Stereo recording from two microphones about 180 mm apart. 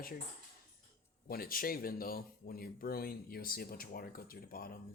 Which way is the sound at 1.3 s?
55° left (ahead or behind).